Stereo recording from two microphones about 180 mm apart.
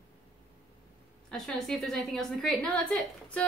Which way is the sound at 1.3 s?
5° left (ahead or behind).